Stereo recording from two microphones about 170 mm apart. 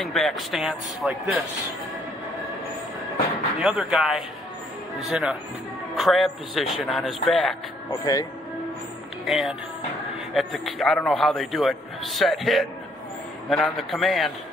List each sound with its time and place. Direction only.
0.0 s a man's voice: centre (ahead or behind)
3.5 s a man's voice: 5° right (ahead or behind)
7.9 s speech: 20° left (ahead or behind)
9.2 s a man's voice: centre (ahead or behind)